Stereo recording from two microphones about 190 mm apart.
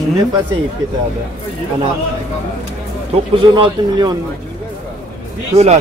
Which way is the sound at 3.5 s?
20° right (ahead or behind).